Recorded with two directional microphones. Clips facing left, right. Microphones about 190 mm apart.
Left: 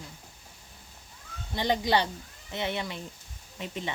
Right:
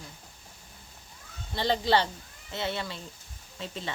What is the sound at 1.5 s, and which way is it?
Speech, 15° left (ahead or behind).